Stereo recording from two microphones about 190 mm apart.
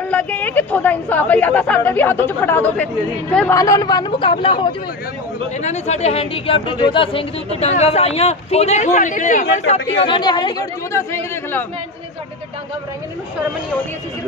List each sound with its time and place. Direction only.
0.1 s a woman's voice: 10° left (ahead or behind); by 9.8 s 40° left (ahead or behind)
10.0 s speech: 25° left (ahead or behind)